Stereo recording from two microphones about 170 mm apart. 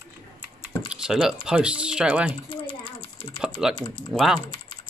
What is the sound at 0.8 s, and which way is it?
Speech, 5° right (ahead or behind).